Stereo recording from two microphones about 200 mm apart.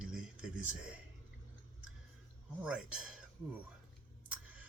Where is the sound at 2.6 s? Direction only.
5° right (ahead or behind).